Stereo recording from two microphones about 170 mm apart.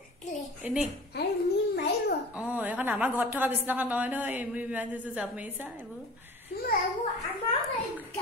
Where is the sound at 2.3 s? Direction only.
10° right (ahead or behind).